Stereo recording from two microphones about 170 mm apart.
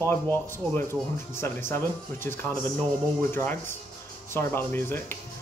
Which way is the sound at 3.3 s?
15° left (ahead or behind).